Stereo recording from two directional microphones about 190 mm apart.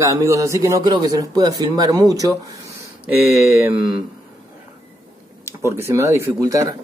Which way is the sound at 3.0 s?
10° right (ahead or behind).